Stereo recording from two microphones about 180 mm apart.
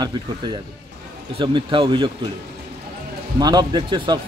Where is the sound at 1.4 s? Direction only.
25° right (ahead or behind).